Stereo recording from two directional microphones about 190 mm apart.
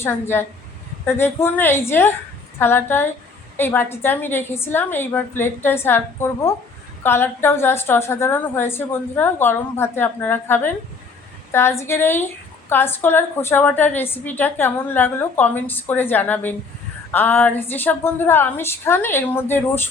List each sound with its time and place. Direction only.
0.0 s a woman's voice: 10° left (ahead or behind)